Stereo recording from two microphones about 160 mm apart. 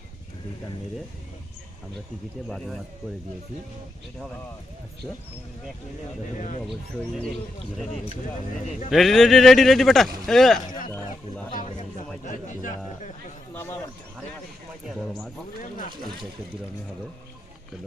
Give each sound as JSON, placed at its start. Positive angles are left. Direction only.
{"t": 2.5, "sound": "a man's voice", "side_deg": 0}
{"t": 8.9, "sound": "a man's voice", "side_deg": 0}
{"t": 11.5, "sound": "speech", "side_deg": 45}
{"t": 13.5, "sound": "speech", "side_deg": 15}
{"t": 14.8, "sound": "a man's voice", "side_deg": 0}